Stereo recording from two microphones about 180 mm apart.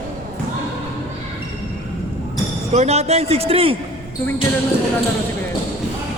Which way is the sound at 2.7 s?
35° right (ahead or behind).